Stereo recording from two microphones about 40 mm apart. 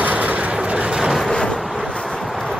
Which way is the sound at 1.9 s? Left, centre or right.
Left.